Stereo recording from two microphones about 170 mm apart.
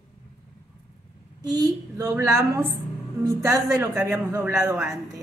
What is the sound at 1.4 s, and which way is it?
A woman's voice, 20° right (ahead or behind).